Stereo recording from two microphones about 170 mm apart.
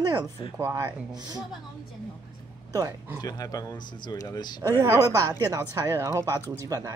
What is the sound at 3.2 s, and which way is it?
Speech, 20° left (ahead or behind).